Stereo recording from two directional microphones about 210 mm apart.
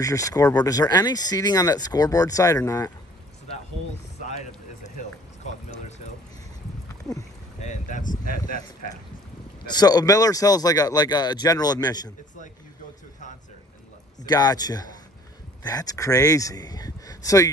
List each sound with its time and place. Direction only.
0.0 s speech: 15° left (ahead or behind)
4.8 s a sound: 35° left (ahead or behind)
7.6 s speech: 35° left (ahead or behind)
9.7 s speech: 20° left (ahead or behind)
14.2 s speech: 20° left (ahead or behind)